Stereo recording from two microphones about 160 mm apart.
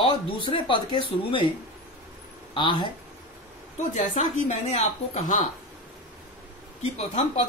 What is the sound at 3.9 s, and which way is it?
Speech, 50° left (ahead or behind).